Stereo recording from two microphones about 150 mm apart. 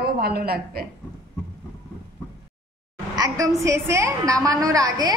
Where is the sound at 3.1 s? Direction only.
25° right (ahead or behind).